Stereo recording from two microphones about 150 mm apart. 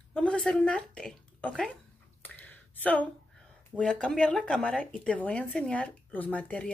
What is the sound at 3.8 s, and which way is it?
Speech, 5° left (ahead or behind).